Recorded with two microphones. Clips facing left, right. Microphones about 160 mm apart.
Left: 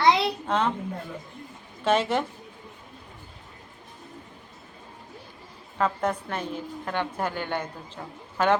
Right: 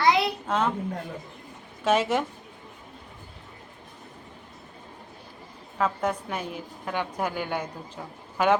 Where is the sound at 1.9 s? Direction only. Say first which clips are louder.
Even; 10° right (ahead or behind).